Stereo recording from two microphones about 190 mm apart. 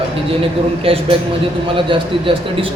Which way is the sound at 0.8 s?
30° right (ahead or behind).